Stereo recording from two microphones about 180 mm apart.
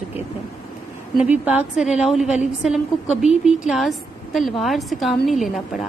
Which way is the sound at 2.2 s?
40° left (ahead or behind).